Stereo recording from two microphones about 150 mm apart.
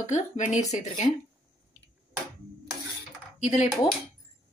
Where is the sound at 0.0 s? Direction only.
50° left (ahead or behind).